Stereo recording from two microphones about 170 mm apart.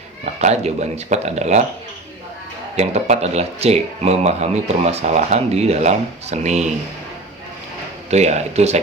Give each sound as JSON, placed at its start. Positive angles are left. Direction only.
{"t": 0.3, "sound": "speech", "side_deg": -40}
{"t": 2.7, "sound": "speech", "side_deg": -40}
{"t": 8.1, "sound": "speech", "side_deg": -40}